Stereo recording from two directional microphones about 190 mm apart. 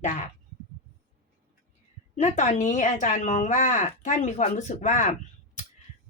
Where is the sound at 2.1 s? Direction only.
40° left (ahead or behind).